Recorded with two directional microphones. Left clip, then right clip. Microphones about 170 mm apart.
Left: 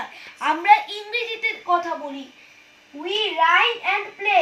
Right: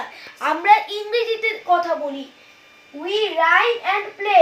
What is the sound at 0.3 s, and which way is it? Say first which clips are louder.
A child's voice: right 1 dB; 20° right (ahead or behind).